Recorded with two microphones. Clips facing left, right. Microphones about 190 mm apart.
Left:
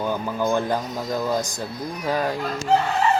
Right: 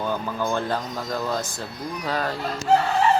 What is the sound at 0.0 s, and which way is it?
Speech, 10° left (ahead or behind).